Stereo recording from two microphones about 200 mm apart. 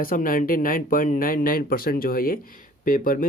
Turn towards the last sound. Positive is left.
turn(degrees=45)  # may be behind; listen again after turning